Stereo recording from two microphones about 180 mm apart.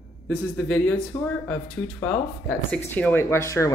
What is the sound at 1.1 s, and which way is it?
Speech, 20° left (ahead or behind).